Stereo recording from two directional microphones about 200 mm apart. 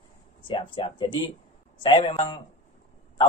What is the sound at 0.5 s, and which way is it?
A man's voice, 25° left (ahead or behind).